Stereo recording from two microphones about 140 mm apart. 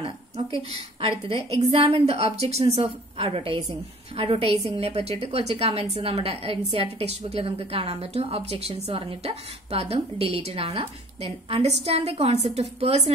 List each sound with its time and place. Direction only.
0.0 s a woman's voice: 45° right (ahead or behind)